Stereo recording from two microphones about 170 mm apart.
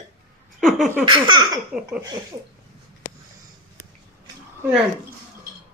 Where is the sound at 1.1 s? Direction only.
25° right (ahead or behind).